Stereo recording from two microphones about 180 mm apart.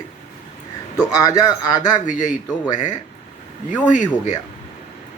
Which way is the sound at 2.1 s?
45° left (ahead or behind).